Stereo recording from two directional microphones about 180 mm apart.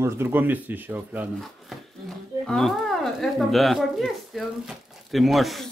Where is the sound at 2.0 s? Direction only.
Centre (ahead or behind).